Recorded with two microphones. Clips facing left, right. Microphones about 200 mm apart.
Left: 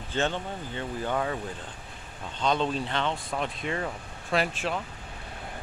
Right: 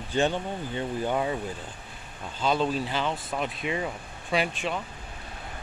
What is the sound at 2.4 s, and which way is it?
Speech, 5° right (ahead or behind).